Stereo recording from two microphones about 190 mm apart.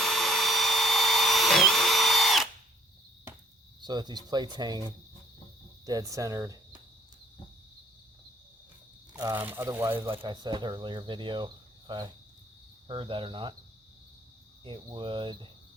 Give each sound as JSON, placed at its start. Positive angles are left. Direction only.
{"t": 0.0, "sound": "vacuum cleaner", "side_deg": 0}
{"t": 3.8, "sound": "speech", "side_deg": -20}
{"t": 9.1, "sound": "speech", "side_deg": -20}
{"t": 10.1, "sound": "speech", "side_deg": -25}
{"t": 14.6, "sound": "speech", "side_deg": -25}